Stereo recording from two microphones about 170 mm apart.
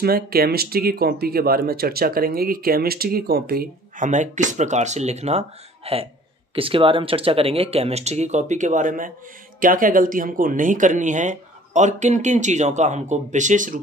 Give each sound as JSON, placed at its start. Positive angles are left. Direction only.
{"t": 0.0, "sound": "speech", "side_deg": -65}